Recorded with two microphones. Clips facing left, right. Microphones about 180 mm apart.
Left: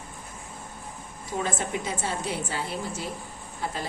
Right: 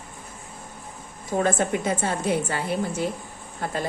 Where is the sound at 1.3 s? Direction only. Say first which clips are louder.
Right 7 dB; 50° right (ahead or behind).